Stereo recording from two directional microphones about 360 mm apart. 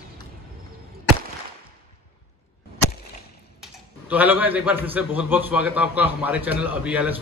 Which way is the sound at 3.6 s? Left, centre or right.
Centre.